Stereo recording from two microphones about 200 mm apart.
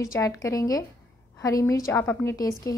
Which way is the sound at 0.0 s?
15° left (ahead or behind).